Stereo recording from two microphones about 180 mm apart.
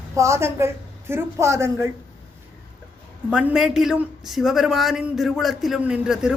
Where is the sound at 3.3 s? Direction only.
5° right (ahead or behind).